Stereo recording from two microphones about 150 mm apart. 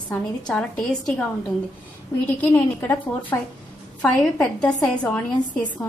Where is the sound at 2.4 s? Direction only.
15° left (ahead or behind).